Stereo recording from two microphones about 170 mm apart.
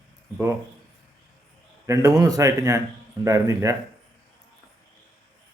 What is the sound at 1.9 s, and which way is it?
A man's voice, 20° right (ahead or behind).